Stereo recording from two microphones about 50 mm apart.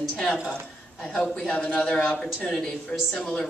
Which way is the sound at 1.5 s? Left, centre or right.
Centre.